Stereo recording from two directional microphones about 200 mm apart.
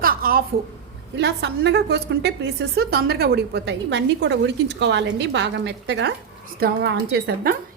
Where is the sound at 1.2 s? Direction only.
60° right (ahead or behind).